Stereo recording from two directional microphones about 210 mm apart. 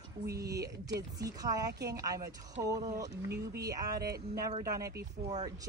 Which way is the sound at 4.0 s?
45° right (ahead or behind).